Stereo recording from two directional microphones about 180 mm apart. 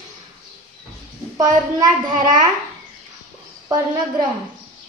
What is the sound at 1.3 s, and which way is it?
A child's voice, 25° right (ahead or behind).